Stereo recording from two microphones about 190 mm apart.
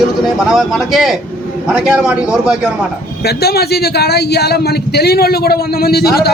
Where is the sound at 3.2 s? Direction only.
55° left (ahead or behind).